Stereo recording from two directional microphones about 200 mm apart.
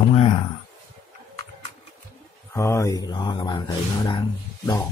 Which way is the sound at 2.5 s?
15° left (ahead or behind).